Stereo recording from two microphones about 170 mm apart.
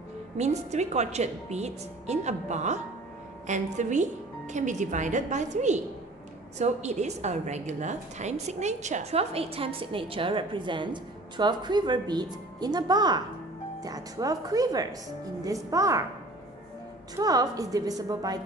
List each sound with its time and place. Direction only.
0.4 s a woman's voice: 40° right (ahead or behind); by 16.0 s 20° right (ahead or behind)
17.1 s a woman's voice: 20° right (ahead or behind)